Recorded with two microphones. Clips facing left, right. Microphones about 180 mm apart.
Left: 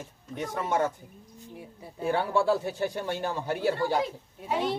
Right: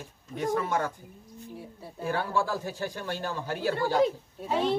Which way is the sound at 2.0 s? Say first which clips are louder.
Left 3 dB; 20° left (ahead or behind).